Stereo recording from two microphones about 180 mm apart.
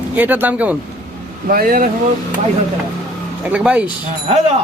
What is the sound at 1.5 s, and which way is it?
Speech, 55° right (ahead or behind).